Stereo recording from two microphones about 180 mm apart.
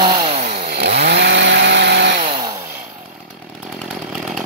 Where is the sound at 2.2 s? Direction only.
30° right (ahead or behind).